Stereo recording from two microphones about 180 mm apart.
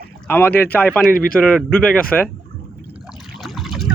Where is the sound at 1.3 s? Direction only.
5° right (ahead or behind).